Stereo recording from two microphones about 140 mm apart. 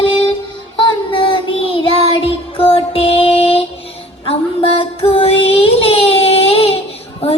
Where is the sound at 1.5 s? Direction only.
40° left (ahead or behind).